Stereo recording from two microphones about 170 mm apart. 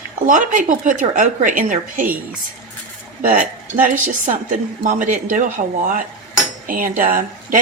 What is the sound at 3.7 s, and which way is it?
Speech, 50° right (ahead or behind).